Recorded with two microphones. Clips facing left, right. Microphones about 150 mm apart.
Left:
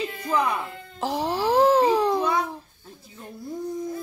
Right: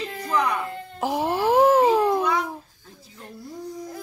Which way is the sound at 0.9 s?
10° right (ahead or behind).